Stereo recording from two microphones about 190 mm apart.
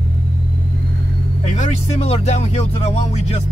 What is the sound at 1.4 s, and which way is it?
Speech, 35° left (ahead or behind).